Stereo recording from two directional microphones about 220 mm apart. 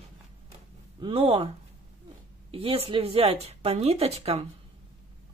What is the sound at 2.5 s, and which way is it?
Speech, 25° right (ahead or behind).